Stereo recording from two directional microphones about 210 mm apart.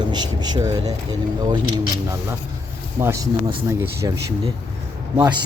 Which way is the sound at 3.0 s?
15° right (ahead or behind).